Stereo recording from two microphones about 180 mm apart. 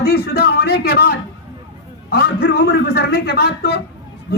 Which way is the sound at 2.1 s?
70° left (ahead or behind).